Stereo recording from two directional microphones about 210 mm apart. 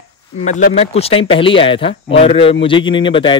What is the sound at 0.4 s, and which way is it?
Speech, 35° left (ahead or behind).